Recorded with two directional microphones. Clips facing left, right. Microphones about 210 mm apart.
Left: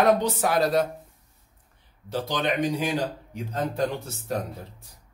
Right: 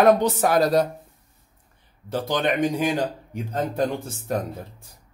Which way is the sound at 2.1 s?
50° right (ahead or behind).